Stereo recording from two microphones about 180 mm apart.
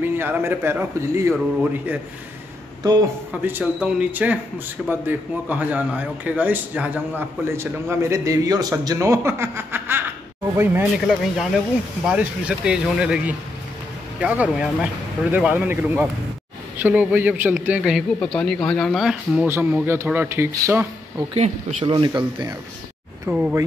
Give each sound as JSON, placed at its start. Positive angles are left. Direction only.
{"t": 0.0, "sound": "a man's voice", "side_deg": -10}
{"t": 3.4, "sound": "a man's voice", "side_deg": -10}
{"t": 21.3, "sound": "speech", "side_deg": -40}
{"t": 21.9, "sound": "speech", "side_deg": -25}
{"t": 23.3, "sound": "a man's voice", "side_deg": -5}